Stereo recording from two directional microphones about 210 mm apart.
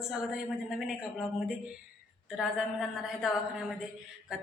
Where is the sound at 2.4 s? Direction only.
Centre (ahead or behind).